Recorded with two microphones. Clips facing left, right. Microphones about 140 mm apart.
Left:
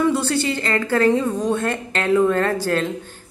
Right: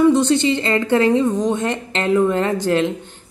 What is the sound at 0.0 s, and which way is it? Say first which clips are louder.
Speech: right 5 dB; 15° right (ahead or behind).